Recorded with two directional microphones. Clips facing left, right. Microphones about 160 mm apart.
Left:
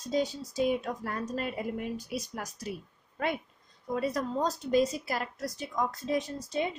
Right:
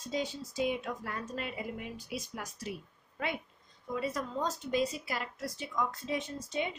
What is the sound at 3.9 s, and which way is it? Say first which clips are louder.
A woman's voice: left 4 dB; 45° left (ahead or behind).